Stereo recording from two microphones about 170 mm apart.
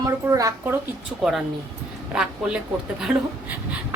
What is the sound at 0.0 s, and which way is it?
Speech, 20° right (ahead or behind).